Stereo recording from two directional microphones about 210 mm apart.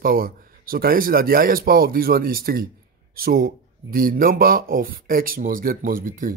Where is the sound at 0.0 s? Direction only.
45° right (ahead or behind).